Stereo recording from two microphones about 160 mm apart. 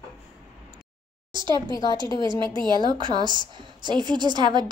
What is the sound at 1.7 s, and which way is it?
Speech, 25° left (ahead or behind).